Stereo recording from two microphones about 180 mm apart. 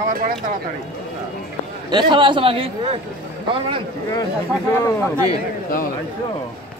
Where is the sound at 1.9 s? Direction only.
25° right (ahead or behind).